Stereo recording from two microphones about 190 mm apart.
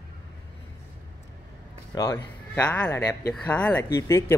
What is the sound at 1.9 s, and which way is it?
A man's voice, 15° left (ahead or behind).